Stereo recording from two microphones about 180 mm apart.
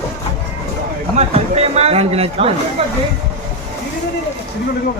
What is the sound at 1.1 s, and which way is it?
Speech, 35° right (ahead or behind).